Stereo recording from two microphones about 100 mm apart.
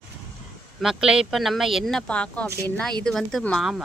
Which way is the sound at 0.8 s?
5° right (ahead or behind).